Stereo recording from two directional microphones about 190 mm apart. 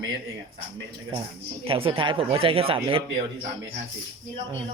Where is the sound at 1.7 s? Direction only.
30° right (ahead or behind).